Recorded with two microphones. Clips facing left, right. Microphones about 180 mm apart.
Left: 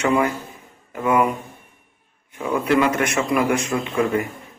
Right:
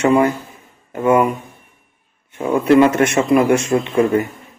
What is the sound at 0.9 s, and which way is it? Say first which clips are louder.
Speech: right 5 dB; 30° right (ahead or behind).